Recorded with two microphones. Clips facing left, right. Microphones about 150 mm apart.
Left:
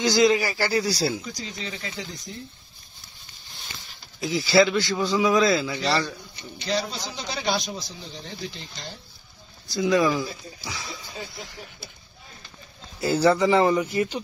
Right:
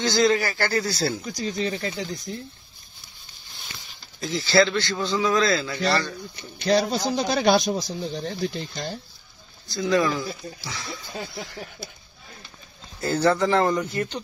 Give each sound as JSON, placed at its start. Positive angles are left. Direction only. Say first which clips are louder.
{"t": 0.0, "sound": "a man's voice", "louder": "left 1 dB", "side_deg": 10}
{"t": 1.6, "sound": "a man's voice", "louder": "right 8 dB", "side_deg": -50}
{"t": 4.2, "sound": "a man's voice", "louder": "left 1 dB", "side_deg": 10}
{"t": 6.6, "sound": "a man's voice", "louder": "right 7 dB", "side_deg": -55}
{"t": 9.8, "sound": "a man's voice", "louder": "left 1 dB", "side_deg": 15}
{"t": 13.0, "sound": "a man's voice", "louder": "left 1 dB", "side_deg": 10}